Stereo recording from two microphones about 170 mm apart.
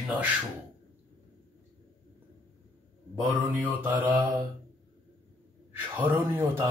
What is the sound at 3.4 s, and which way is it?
Speech, 10° right (ahead or behind).